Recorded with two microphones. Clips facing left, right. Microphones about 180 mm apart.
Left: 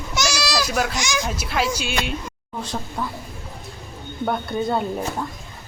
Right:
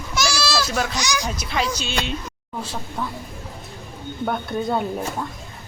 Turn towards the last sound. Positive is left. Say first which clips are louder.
# even
turn(degrees=0)  # may be behind; listen again after turning